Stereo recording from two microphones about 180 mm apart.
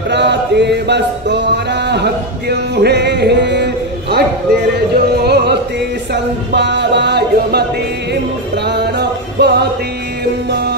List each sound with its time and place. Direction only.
0.1 s music: 70° right (ahead or behind)
8.6 s music: 65° right (ahead or behind)